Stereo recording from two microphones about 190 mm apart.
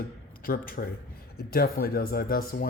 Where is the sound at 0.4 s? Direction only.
50° left (ahead or behind).